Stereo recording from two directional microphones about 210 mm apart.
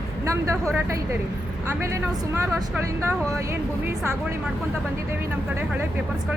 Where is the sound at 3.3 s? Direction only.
15° right (ahead or behind).